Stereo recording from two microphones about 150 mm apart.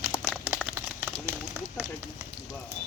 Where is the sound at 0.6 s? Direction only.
10° right (ahead or behind).